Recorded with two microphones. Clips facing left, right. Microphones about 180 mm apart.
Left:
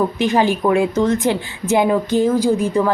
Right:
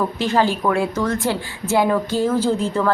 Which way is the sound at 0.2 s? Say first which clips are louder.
Left 1 dB; 15° left (ahead or behind).